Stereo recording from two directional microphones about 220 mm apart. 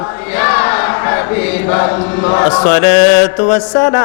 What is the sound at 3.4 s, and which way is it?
Mantra, 25° left (ahead or behind).